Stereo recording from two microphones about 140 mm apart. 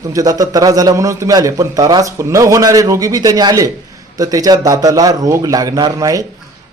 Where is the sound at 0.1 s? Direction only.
25° right (ahead or behind).